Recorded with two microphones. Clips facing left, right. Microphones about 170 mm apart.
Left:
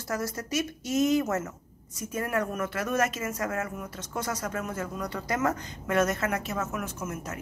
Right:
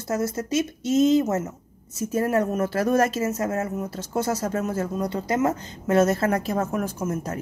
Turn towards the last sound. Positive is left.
turn(degrees=-30)  # may be behind; listen again after turning